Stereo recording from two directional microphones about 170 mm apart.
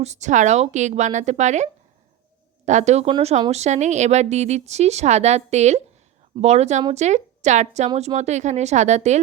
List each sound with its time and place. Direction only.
0.0 s a woman's voice: 40° right (ahead or behind)